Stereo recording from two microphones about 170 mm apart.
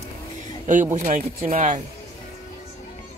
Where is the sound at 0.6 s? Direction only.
45° right (ahead or behind).